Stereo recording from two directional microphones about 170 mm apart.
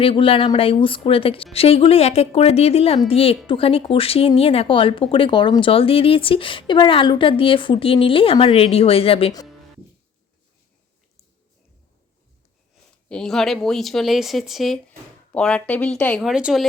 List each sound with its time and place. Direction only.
0.0 s speech: 30° left (ahead or behind)
13.1 s speech: 5° left (ahead or behind)